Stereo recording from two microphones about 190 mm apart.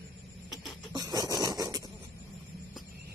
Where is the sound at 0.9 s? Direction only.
20° right (ahead or behind).